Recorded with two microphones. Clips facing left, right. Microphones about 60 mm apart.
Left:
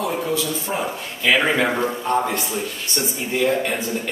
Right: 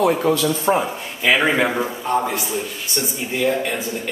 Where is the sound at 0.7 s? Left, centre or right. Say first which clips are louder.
Right 3 dB; centre.